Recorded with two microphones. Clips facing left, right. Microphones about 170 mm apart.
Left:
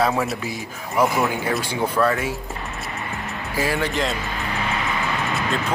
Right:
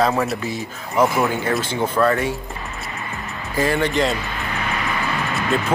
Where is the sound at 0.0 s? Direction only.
Centre (ahead or behind).